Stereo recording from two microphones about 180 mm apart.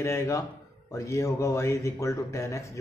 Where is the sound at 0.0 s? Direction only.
15° left (ahead or behind).